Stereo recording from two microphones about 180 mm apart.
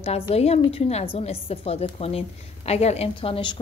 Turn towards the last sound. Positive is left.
turn(degrees=25)  # may be behind; listen again after turning